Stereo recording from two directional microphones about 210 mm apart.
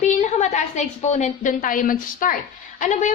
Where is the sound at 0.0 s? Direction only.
35° left (ahead or behind).